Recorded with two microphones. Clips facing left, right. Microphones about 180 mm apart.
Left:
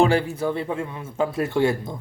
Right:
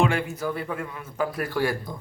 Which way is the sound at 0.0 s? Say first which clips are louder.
Left 5 dB; 30° left (ahead or behind).